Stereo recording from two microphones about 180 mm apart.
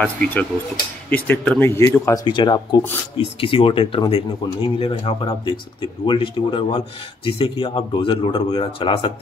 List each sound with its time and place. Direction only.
0.0 s speech: 5° left (ahead or behind); by 9.1 s 30° left (ahead or behind)